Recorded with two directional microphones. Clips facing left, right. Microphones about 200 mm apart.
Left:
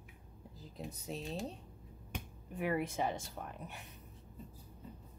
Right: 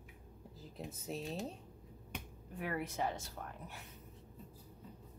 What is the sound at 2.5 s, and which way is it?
Speech, 20° left (ahead or behind).